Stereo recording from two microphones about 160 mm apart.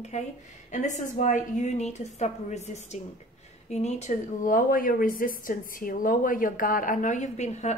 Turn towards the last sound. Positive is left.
turn(degrees=45)  # may be behind; listen again after turning